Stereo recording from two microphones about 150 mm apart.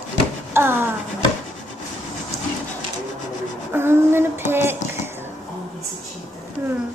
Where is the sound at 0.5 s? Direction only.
15° right (ahead or behind).